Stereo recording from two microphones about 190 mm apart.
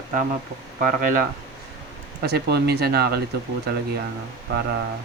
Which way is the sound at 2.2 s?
60° right (ahead or behind).